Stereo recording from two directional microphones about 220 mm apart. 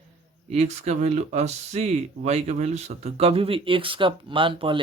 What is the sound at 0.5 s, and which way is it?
Speech, 30° right (ahead or behind).